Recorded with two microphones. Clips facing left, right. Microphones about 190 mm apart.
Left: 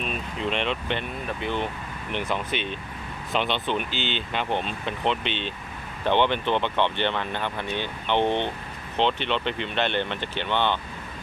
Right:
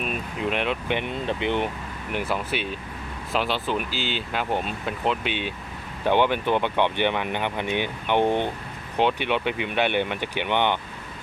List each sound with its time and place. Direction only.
0.0 s speech: 5° right (ahead or behind)
1.0 s speech: 25° right (ahead or behind)
2.1 s speech: 5° right (ahead or behind)